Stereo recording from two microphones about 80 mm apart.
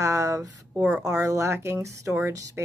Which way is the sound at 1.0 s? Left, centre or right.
Right.